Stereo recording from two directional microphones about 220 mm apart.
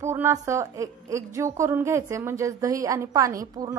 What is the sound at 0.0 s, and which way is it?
A woman's voice, 10° right (ahead or behind).